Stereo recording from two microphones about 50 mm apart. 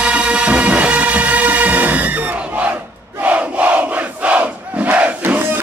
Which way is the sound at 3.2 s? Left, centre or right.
Right.